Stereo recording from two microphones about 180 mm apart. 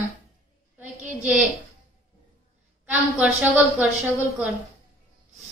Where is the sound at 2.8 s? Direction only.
10° right (ahead or behind).